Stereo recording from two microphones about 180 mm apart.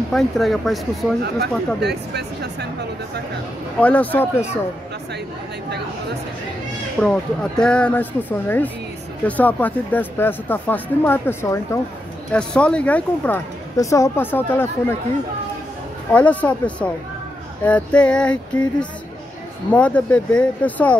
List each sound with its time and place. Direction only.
0.1 s female singing: centre (ahead or behind)
1.8 s speech: 65° right (ahead or behind)
3.8 s speech: 10° left (ahead or behind)
7.0 s speech: 5° left (ahead or behind)
16.1 s speech: 10° left (ahead or behind)
17.6 s female singing: 5° left (ahead or behind)
19.7 s speech: 5° left (ahead or behind)